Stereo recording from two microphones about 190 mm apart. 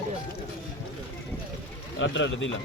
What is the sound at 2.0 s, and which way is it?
Speech, 75° left (ahead or behind).